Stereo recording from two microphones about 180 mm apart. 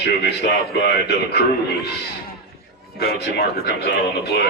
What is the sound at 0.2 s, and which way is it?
A man's voice, 65° left (ahead or behind).